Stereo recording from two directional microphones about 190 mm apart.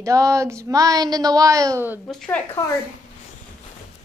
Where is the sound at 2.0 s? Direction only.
5° left (ahead or behind).